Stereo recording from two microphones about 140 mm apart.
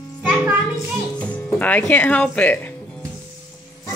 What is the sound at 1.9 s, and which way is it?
Speech, 10° left (ahead or behind).